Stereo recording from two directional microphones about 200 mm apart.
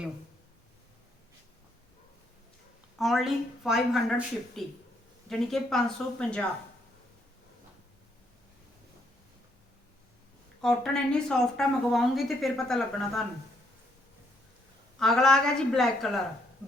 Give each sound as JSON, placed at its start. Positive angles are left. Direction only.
{"t": 3.0, "sound": "speech", "side_deg": 0}
{"t": 10.6, "sound": "speech", "side_deg": 5}
{"t": 14.9, "sound": "speech", "side_deg": 0}